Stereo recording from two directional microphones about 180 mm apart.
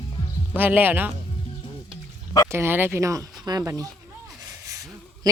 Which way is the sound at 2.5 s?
15° right (ahead or behind).